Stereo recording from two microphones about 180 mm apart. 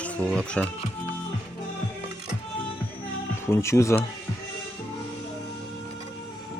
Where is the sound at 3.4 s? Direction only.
15° left (ahead or behind).